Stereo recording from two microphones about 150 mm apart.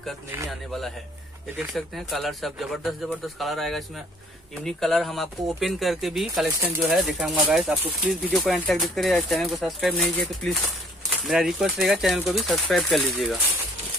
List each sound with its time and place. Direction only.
1.7 s speech: centre (ahead or behind)